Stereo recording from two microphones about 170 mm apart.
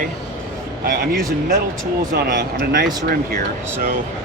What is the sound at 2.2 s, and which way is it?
Speech, 55° right (ahead or behind).